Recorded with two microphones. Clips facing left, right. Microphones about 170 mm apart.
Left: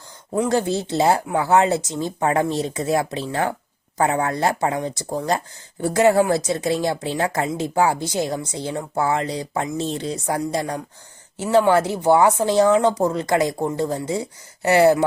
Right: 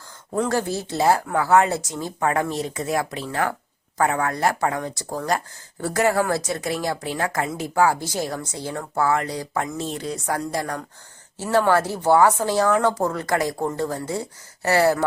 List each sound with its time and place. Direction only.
0.3 s speech: 20° left (ahead or behind)